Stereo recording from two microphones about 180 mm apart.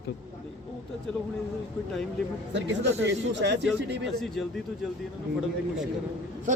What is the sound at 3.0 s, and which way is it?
Speech, 75° right (ahead or behind).